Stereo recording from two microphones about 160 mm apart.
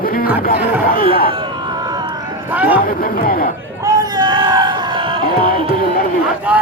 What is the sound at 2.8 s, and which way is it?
Speech, 65° left (ahead or behind).